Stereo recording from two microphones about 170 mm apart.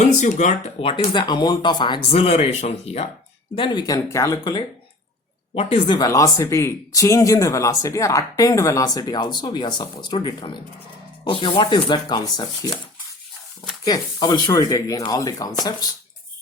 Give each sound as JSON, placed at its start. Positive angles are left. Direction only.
{"t": 0.2, "sound": "speech", "side_deg": 45}
{"t": 3.5, "sound": "speech", "side_deg": 25}
{"t": 5.5, "sound": "speech", "side_deg": 35}
{"t": 13.8, "sound": "speech", "side_deg": 25}